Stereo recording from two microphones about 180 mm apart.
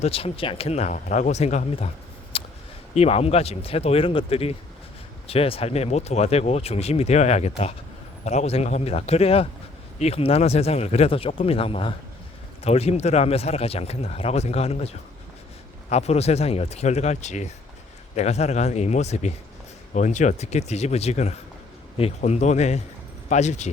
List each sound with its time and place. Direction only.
0.0 s speech: 30° left (ahead or behind)
2.3 s a sound: 30° left (ahead or behind)
2.9 s speech: 35° left (ahead or behind)